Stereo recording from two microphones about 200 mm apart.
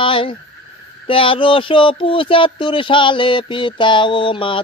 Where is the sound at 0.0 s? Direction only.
25° left (ahead or behind).